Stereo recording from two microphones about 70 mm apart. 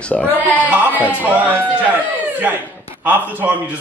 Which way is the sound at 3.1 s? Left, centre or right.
Right.